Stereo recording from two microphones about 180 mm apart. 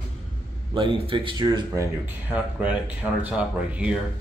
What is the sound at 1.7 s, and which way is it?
Speech, 10° right (ahead or behind).